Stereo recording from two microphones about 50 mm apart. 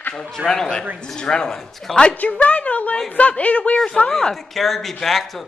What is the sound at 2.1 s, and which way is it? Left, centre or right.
A woman's voice, left.